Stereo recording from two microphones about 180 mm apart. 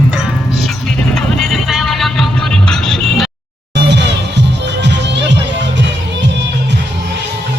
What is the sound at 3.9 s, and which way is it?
Music, 75° right (ahead or behind).